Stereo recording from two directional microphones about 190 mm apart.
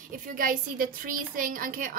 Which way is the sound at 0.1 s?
45° right (ahead or behind).